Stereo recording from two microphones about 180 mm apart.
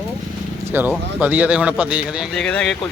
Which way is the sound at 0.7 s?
10° right (ahead or behind).